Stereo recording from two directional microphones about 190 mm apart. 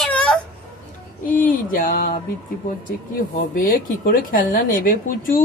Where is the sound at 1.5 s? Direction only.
45° left (ahead or behind).